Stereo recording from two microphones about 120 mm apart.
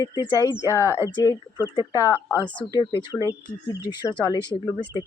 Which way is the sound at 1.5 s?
40° left (ahead or behind).